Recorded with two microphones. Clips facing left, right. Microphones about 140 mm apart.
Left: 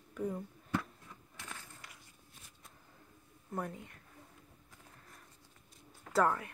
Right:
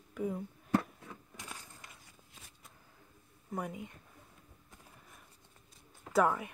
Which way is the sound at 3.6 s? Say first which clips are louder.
Right 1 dB; 15° right (ahead or behind).